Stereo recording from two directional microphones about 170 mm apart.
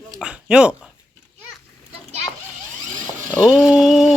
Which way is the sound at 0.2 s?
5° right (ahead or behind).